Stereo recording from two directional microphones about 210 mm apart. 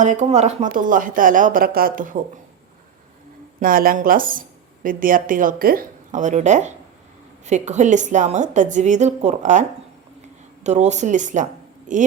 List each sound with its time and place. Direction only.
0.0 s a woman's voice: 35° right (ahead or behind)
3.6 s a woman's voice: 40° right (ahead or behind)